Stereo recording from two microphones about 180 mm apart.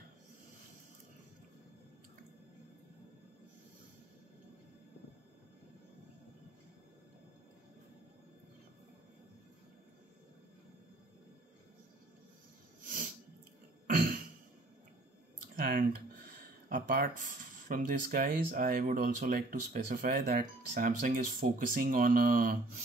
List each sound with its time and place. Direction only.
12.8 s sneeze: 50° right (ahead or behind)
13.8 s throat clearing: 50° right (ahead or behind)
15.5 s speech: 55° right (ahead or behind)